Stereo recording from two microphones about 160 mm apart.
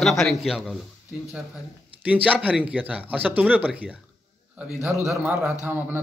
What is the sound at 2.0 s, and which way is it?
Speech, 10° right (ahead or behind).